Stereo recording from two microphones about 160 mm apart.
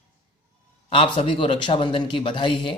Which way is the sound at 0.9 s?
35° left (ahead or behind).